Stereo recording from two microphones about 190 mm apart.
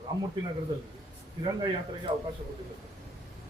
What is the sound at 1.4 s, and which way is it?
Speech, 25° right (ahead or behind).